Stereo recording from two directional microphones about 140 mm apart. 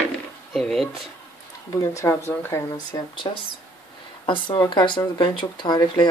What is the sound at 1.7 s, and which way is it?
Speech, 20° left (ahead or behind).